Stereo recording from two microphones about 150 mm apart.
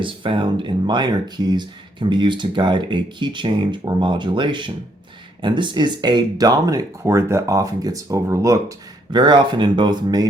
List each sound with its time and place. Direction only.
0.0 s speech: 35° right (ahead or behind)